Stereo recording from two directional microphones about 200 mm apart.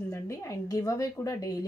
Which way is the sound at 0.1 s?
15° left (ahead or behind).